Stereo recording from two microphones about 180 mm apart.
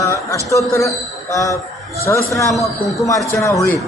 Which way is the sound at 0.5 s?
15° left (ahead or behind).